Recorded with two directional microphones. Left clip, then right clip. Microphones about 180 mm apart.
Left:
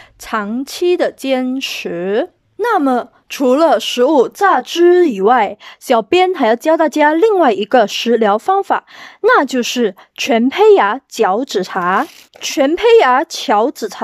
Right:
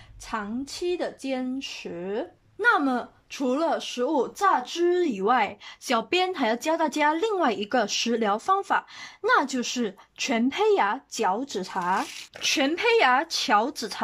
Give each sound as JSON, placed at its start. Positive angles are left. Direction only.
{"t": 0.3, "sound": "speech", "side_deg": 50}
{"t": 2.6, "sound": "speech", "side_deg": 40}